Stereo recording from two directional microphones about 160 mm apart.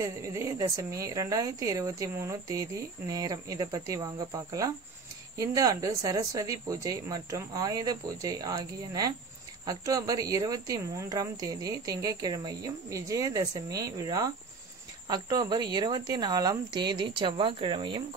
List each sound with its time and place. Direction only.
0.0 s a woman's voice: 20° right (ahead or behind)